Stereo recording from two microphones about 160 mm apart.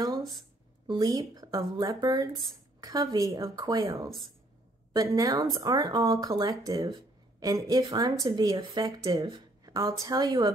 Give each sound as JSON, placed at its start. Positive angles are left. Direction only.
{"t": 0.0, "sound": "music", "side_deg": -25}
{"t": 0.8, "sound": "speech", "side_deg": -25}